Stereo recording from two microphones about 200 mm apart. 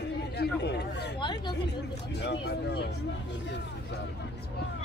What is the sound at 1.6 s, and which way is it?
Speech, 60° left (ahead or behind).